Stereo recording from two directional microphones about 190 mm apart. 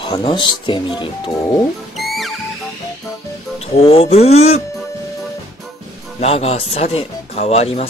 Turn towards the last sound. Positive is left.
turn(degrees=30)  # may be behind; listen again after turning